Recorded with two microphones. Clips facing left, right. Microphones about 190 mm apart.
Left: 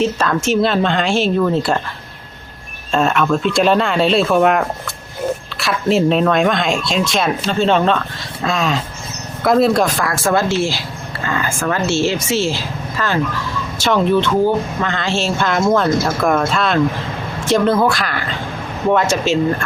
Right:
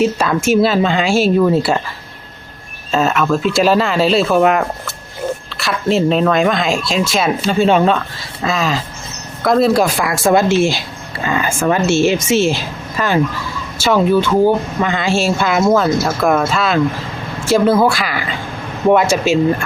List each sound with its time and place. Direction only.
0.0 s speech: 10° right (ahead or behind)
2.9 s speech: centre (ahead or behind)